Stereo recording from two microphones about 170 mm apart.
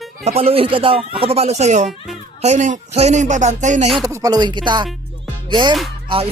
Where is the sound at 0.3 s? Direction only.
35° right (ahead or behind).